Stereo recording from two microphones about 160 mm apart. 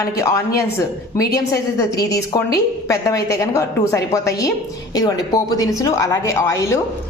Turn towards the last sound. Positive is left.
turn(degrees=20)  # may be behind; listen again after turning